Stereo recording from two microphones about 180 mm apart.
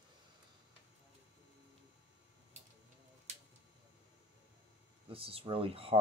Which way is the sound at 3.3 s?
40° right (ahead or behind).